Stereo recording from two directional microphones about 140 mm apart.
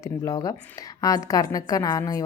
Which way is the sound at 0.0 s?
25° left (ahead or behind).